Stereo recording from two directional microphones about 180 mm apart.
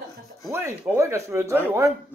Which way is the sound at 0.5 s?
15° right (ahead or behind).